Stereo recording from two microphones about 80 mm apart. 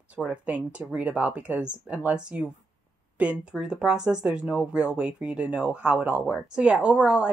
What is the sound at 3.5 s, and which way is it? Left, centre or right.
Speech, centre.